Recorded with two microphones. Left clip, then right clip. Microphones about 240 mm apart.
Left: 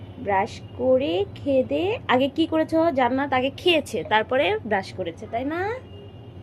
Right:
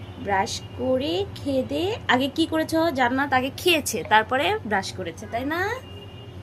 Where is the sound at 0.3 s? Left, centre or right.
Centre.